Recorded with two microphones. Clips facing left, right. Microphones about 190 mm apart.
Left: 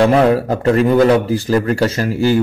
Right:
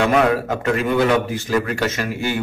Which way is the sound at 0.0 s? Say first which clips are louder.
Left 5 dB; 35° left (ahead or behind).